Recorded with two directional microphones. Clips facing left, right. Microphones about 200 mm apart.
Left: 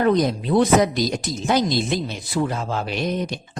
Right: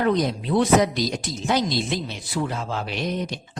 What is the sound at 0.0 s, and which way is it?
A woman's voice, 45° left (ahead or behind).